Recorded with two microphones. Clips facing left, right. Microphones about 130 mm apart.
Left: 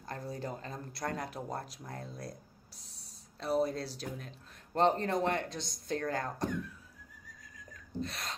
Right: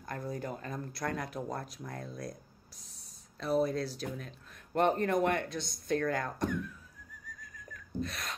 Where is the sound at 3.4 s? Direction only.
30° left (ahead or behind).